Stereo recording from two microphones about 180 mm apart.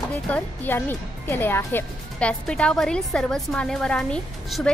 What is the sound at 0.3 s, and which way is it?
Speech, 10° left (ahead or behind).